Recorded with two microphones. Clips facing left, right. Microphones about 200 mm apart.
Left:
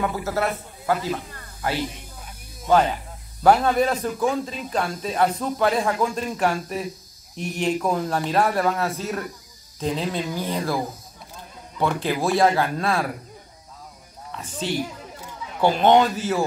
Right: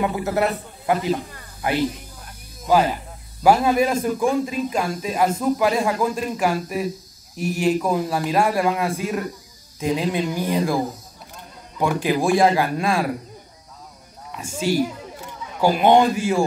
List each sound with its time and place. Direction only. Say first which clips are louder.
0.0 s speech: right 3 dB; 20° right (ahead or behind)
11.8 s speech: right 3 dB; 15° right (ahead or behind)
14.3 s speech: right 5 dB; 10° right (ahead or behind)